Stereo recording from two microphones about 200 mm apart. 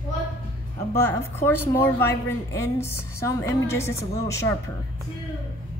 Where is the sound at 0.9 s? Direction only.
10° left (ahead or behind).